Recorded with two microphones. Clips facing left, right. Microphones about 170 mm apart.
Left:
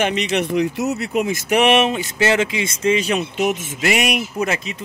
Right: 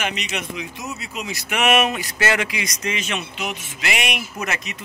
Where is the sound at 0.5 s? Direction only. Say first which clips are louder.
Left 12 dB; 70° left (ahead or behind).